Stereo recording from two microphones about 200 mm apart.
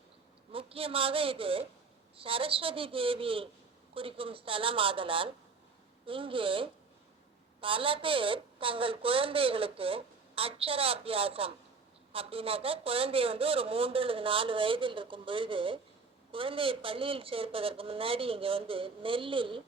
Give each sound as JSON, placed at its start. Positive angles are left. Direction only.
{"t": 0.5, "sound": "a woman's voice", "side_deg": -30}